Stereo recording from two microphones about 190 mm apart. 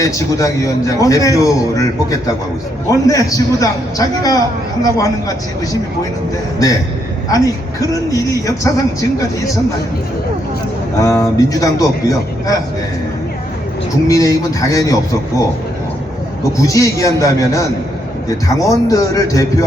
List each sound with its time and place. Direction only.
0.0 s a man's voice: 15° left (ahead or behind)
7.3 s a man's voice: 20° left (ahead or behind)
11.0 s a man's voice: 15° left (ahead or behind)
14.1 s a man's voice: 20° left (ahead or behind)
16.5 s a man's voice: 15° left (ahead or behind)